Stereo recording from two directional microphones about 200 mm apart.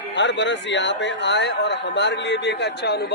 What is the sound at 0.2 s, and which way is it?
A man's voice, 65° left (ahead or behind).